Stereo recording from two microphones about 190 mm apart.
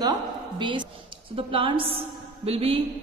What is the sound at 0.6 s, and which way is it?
A woman's voice, 25° right (ahead or behind).